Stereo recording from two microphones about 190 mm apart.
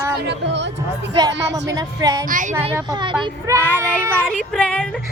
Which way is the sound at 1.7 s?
20° right (ahead or behind).